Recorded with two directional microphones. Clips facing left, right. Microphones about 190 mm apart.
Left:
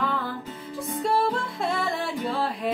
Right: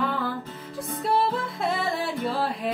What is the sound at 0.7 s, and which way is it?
Music, centre (ahead or behind).